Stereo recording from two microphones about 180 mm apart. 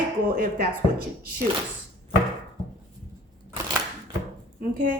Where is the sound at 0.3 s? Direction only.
55° right (ahead or behind).